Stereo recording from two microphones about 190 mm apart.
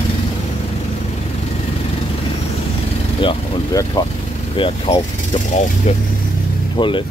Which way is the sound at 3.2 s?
25° left (ahead or behind).